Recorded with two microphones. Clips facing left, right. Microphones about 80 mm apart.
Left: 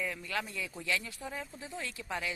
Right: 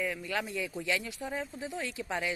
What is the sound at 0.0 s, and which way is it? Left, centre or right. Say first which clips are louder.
Speech: right 3 dB; centre.